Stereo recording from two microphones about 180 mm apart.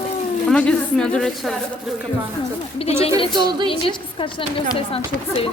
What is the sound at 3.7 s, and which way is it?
Speech, 30° left (ahead or behind).